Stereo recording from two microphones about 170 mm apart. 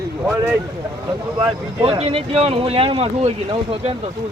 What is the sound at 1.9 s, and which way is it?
Speech, 35° right (ahead or behind).